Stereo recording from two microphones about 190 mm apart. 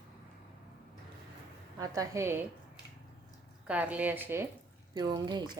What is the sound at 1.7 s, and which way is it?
Speech, 15° right (ahead or behind).